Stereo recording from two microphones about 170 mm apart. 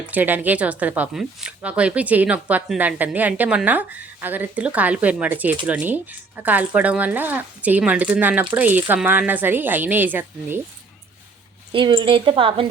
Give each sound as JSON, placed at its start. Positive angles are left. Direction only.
{"t": 0.0, "sound": "speech", "side_deg": -10}
{"t": 11.7, "sound": "speech", "side_deg": -30}